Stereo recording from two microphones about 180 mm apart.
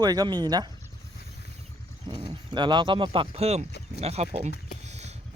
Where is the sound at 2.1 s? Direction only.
25° right (ahead or behind).